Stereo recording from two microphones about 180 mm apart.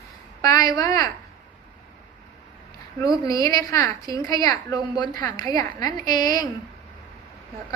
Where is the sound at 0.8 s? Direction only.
20° left (ahead or behind).